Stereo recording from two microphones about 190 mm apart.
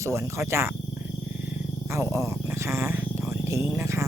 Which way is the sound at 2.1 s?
15° right (ahead or behind).